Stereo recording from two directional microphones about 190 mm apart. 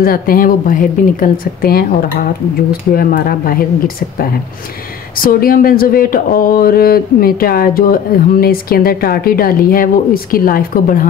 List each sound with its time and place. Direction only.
0.0 s speech: 50° left (ahead or behind)
2.9 s speech: 50° left (ahead or behind)